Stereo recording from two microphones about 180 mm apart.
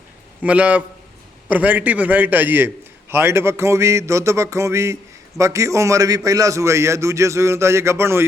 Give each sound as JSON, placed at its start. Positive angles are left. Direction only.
{"t": 0.4, "sound": "a man's voice", "side_deg": -10}